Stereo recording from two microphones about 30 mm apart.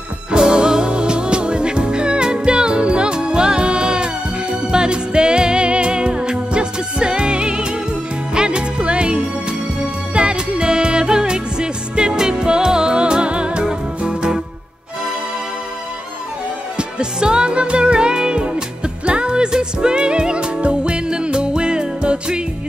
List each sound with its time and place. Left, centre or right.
0.3 s music: right
16.7 s music: right